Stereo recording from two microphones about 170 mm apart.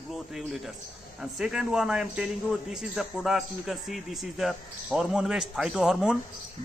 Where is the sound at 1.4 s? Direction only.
5° right (ahead or behind).